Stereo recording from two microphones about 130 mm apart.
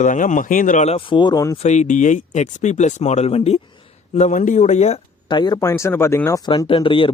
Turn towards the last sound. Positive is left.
turn(degrees=40)  # may be behind; listen again after turning